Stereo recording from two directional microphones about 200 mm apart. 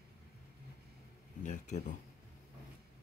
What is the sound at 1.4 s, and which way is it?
Speech, 40° left (ahead or behind).